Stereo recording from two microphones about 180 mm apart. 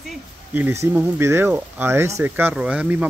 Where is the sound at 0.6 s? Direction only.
10° right (ahead or behind).